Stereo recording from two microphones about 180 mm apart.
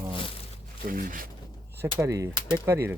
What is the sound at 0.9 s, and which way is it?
Speech, 50° right (ahead or behind).